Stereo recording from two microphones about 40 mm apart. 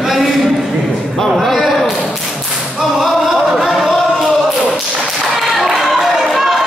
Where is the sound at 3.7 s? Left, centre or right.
Centre.